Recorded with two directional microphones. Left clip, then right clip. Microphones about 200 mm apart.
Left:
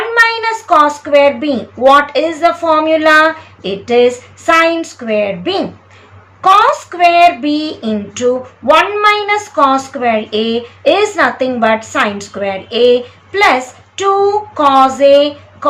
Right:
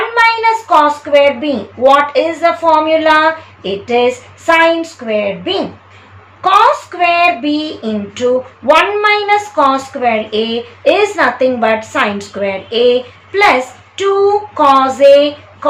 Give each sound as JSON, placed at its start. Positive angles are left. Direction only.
{"t": 0.1, "sound": "child singing", "side_deg": 15}
{"t": 0.9, "sound": "female singing", "side_deg": 15}
{"t": 6.9, "sound": "female singing", "side_deg": 10}